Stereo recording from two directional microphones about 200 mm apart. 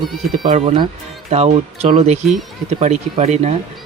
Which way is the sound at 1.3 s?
35° right (ahead or behind).